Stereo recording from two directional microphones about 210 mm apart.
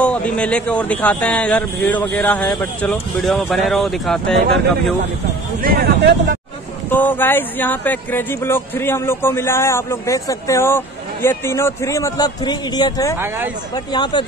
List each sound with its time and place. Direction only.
0.0 s speech: 5° left (ahead or behind)
5.6 s speech: 45° right (ahead or behind)
6.9 s speech: 10° left (ahead or behind)